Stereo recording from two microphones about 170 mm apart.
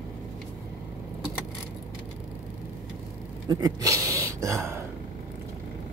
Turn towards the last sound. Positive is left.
turn(degrees=-15)  # may be behind; listen again after turning